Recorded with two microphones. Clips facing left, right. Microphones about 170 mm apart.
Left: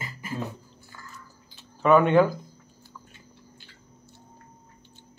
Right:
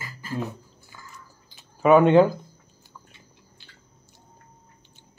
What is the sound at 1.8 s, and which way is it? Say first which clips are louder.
Speech: right 3 dB; 20° right (ahead or behind).